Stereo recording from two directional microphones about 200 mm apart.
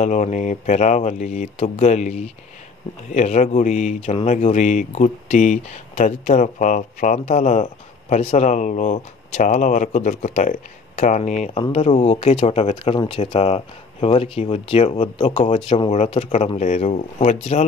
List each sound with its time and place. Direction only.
0.0 s speech: 35° left (ahead or behind)